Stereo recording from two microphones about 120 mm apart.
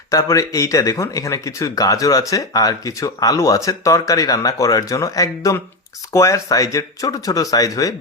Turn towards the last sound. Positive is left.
turn(degrees=30)  # may be behind; listen again after turning